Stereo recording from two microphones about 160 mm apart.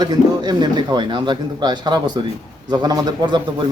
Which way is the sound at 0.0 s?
25° right (ahead or behind).